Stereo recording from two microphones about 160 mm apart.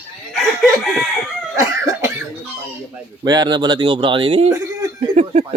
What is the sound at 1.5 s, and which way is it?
Cough, 20° right (ahead or behind).